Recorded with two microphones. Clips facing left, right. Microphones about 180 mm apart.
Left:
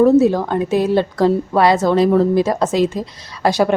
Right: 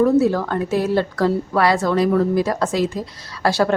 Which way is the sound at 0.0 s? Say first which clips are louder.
Left 4 dB; 20° left (ahead or behind).